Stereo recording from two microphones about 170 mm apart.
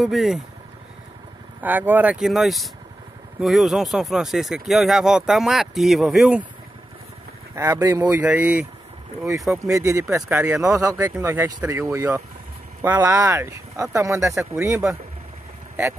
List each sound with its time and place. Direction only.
0.0 s speech: centre (ahead or behind)
1.6 s speech: 10° right (ahead or behind)
7.5 s speech: 15° right (ahead or behind)
9.7 s speech: 20° right (ahead or behind)